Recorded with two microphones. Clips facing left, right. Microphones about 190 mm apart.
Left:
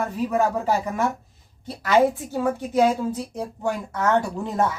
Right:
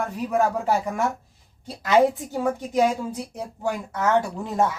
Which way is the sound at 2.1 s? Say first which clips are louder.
Left 1 dB; 15° right (ahead or behind).